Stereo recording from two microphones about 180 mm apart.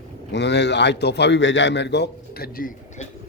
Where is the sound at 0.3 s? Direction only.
75° left (ahead or behind).